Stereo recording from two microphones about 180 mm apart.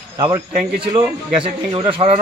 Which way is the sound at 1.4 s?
30° right (ahead or behind).